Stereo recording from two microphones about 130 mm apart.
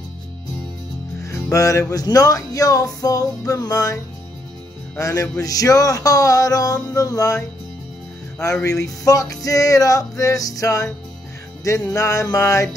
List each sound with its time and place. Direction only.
1.2 s music: 25° left (ahead or behind)
8.6 s music: 25° left (ahead or behind)
11.9 s music: 25° left (ahead or behind)